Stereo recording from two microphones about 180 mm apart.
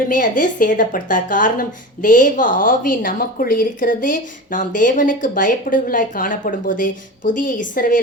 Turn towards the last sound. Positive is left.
turn(degrees=50)  # may be behind; listen again after turning